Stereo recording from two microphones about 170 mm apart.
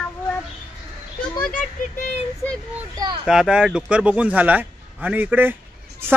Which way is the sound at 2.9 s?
25° right (ahead or behind).